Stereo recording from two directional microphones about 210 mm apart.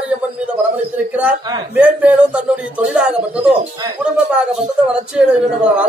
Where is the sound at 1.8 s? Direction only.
5° right (ahead or behind).